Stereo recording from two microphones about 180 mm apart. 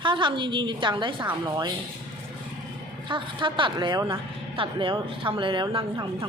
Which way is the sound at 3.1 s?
25° right (ahead or behind).